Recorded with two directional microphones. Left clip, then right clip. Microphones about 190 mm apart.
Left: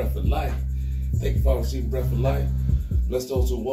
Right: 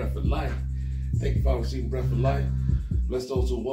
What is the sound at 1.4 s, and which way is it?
Speech, 15° right (ahead or behind).